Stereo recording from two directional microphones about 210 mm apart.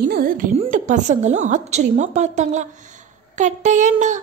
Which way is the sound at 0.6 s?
35° right (ahead or behind).